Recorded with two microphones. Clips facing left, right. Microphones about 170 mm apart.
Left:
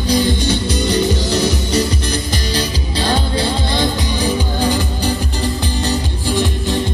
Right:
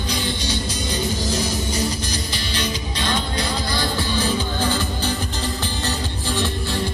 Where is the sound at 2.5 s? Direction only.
35° left (ahead or behind).